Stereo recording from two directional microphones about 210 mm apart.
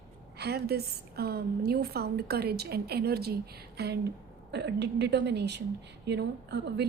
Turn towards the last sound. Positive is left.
turn(degrees=-55)  # may be behind; listen again after turning